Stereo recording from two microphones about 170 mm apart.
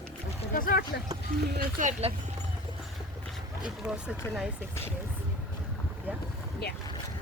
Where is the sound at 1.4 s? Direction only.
65° right (ahead or behind).